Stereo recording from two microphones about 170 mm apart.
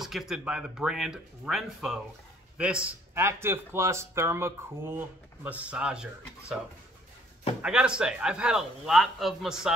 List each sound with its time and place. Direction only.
0.0 s a man's voice: centre (ahead or behind)
7.6 s a man's voice: 5° right (ahead or behind)